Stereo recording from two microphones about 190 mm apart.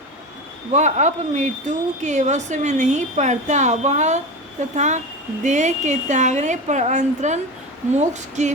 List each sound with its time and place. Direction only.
0.7 s speech: 40° right (ahead or behind)